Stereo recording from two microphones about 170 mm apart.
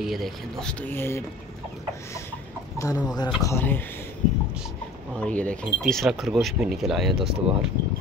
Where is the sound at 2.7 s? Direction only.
20° left (ahead or behind).